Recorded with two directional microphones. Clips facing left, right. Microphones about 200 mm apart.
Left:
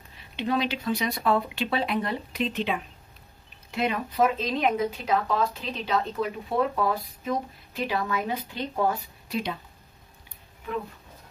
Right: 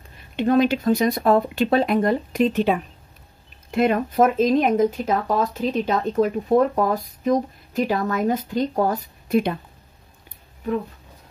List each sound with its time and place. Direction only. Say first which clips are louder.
0.4 s speech: right 9 dB; 50° right (ahead or behind)